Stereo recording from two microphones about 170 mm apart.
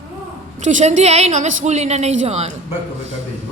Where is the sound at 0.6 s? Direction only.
45° right (ahead or behind).